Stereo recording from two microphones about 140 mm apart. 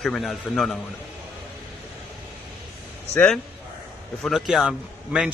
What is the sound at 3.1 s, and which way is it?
A man's voice, 5° left (ahead or behind).